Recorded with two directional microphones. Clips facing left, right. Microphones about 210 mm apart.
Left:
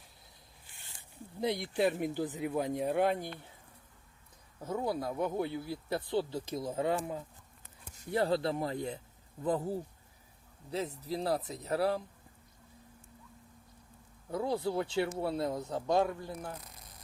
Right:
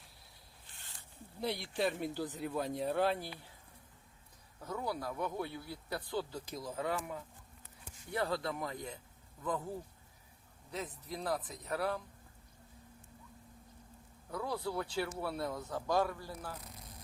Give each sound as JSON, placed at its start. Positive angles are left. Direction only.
{"t": 1.4, "sound": "speech", "side_deg": 20}
{"t": 4.6, "sound": "speech", "side_deg": 25}
{"t": 14.3, "sound": "speech", "side_deg": 25}